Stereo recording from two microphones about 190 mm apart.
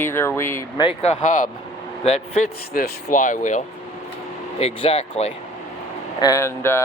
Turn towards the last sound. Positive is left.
turn(degrees=15)  # may be behind; listen again after turning